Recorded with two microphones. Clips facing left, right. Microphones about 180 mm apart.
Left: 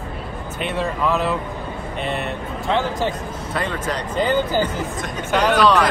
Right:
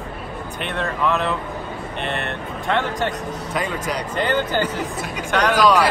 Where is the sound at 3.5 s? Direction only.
10° right (ahead or behind).